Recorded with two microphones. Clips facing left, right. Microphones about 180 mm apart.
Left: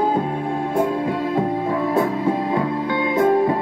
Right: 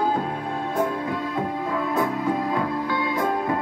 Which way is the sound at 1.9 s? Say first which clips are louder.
Left 3 dB; 25° left (ahead or behind).